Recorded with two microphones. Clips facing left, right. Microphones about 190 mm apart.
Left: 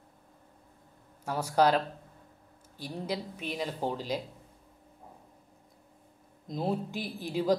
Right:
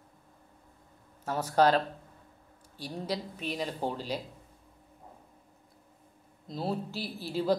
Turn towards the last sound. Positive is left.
turn(degrees=15)  # may be behind; listen again after turning